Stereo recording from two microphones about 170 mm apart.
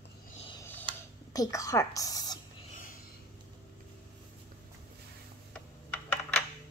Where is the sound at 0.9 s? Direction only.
30° right (ahead or behind).